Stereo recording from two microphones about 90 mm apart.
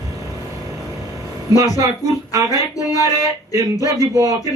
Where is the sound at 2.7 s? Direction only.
40° left (ahead or behind).